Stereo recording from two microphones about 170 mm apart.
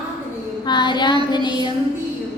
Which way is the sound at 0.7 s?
25° left (ahead or behind).